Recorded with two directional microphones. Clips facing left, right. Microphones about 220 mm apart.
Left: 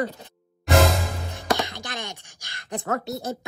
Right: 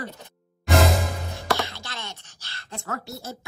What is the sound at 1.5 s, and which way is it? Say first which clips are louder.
Speech: left 2 dB; 15° left (ahead or behind).